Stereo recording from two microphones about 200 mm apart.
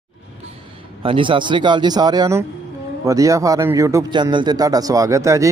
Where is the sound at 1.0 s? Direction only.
25° right (ahead or behind).